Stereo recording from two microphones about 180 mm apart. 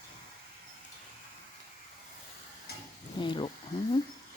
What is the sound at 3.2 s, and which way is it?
Speech, 25° left (ahead or behind).